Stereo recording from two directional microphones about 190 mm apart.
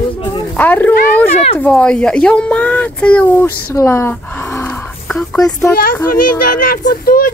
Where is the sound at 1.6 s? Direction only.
10° left (ahead or behind).